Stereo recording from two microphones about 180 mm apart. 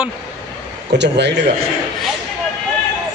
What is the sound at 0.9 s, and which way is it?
Speech, 75° right (ahead or behind).